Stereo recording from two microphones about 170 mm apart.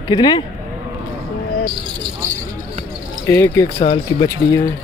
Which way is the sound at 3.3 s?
15° left (ahead or behind).